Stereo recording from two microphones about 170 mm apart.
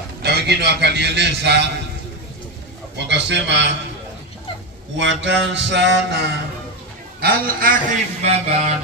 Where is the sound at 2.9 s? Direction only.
90° right.